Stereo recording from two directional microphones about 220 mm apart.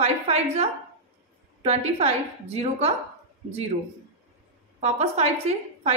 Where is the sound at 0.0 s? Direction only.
30° right (ahead or behind).